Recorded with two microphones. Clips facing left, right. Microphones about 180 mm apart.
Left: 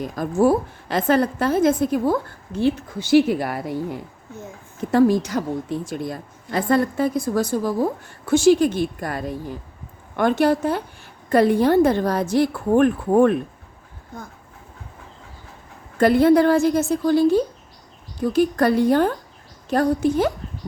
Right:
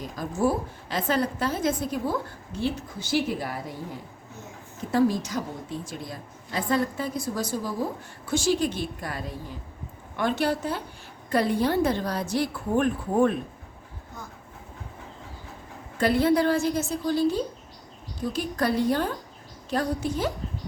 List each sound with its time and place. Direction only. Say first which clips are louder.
0.0 s a woman's voice: left 7 dB; 65° left (ahead or behind)
3.1 s speech: left 10 dB; 70° left (ahead or behind)
4.9 s a woman's voice: left 6 dB; 60° left (ahead or behind)
16.0 s a woman's voice: left 7 dB; 50° left (ahead or behind)